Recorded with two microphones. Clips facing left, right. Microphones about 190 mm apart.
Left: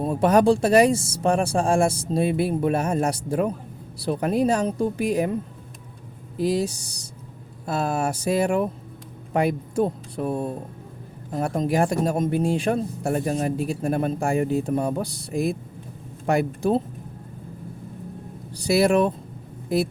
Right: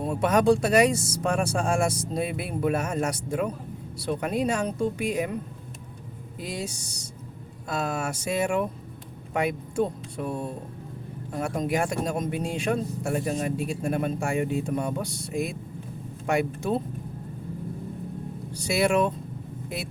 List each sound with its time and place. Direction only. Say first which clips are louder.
0.0 s speech: left 4 dB; 35° left (ahead or behind)
6.4 s speech: left 11 dB; 35° left (ahead or behind)
18.5 s speech: left 4 dB; 35° left (ahead or behind)